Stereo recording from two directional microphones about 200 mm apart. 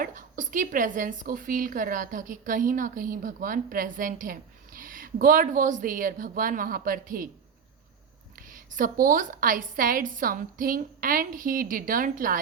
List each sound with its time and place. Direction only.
0.0 s a woman's voice: 40° right (ahead or behind)
8.4 s a woman's voice: 45° right (ahead or behind)